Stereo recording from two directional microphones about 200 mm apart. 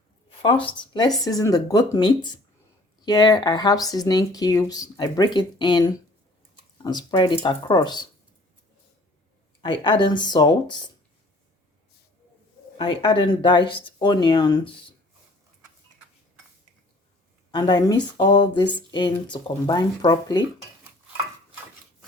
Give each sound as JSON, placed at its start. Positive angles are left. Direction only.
{"t": 0.3, "sound": "speech", "side_deg": 25}
{"t": 9.6, "sound": "speech", "side_deg": 25}
{"t": 12.8, "sound": "speech", "side_deg": 25}
{"t": 17.5, "sound": "speech", "side_deg": 20}